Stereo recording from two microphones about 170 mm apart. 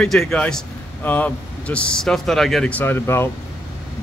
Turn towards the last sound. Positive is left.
turn(degrees=15)  # may be behind; listen again after turning